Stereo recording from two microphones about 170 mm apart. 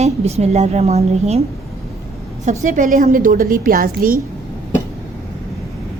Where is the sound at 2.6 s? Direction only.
50° right (ahead or behind).